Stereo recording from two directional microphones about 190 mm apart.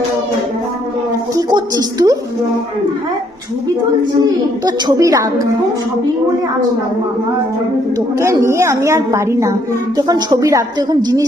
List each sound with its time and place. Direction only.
1.4 s a sound: 20° right (ahead or behind)
4.6 s a woman's voice: 20° right (ahead or behind)
8.2 s a woman's voice: 15° right (ahead or behind)